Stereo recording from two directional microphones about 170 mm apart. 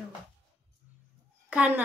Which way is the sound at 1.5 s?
10° right (ahead or behind).